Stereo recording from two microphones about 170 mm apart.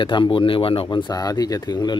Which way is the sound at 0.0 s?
30° left (ahead or behind).